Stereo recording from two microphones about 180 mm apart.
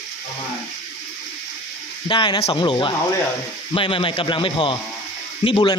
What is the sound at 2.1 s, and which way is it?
A man's voice, 30° left (ahead or behind).